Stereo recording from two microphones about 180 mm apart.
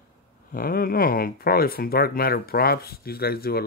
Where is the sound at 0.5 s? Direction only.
55° left (ahead or behind).